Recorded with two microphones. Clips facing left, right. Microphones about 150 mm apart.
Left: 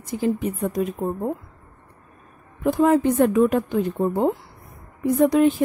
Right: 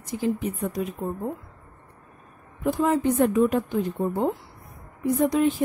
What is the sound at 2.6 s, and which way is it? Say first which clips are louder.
Speech: left 5 dB; 60° left (ahead or behind).